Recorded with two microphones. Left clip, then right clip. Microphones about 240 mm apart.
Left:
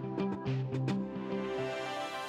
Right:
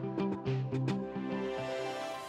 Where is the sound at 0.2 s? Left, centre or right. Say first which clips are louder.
Right 1 dB; centre.